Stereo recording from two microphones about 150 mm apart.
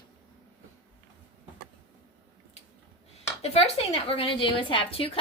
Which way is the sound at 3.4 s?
45° left (ahead or behind).